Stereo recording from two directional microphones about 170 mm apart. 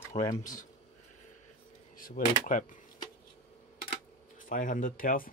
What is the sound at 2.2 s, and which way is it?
Speech, 55° left (ahead or behind).